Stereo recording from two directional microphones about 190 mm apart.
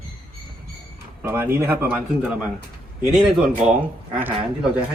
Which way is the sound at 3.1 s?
Centre (ahead or behind).